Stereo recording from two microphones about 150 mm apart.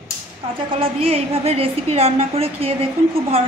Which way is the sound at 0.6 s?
40° right (ahead or behind).